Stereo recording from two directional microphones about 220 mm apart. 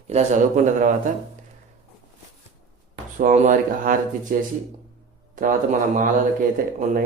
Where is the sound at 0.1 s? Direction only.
30° right (ahead or behind).